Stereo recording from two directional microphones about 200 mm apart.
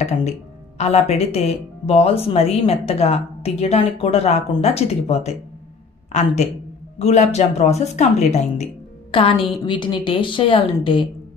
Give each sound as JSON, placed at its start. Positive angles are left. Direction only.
{"t": 0.7, "sound": "speech", "side_deg": 35}